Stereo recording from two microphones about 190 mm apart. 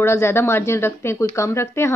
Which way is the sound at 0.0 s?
15° left (ahead or behind).